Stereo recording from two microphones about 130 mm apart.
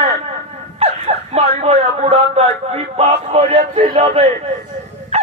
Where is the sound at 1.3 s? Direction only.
55° right (ahead or behind).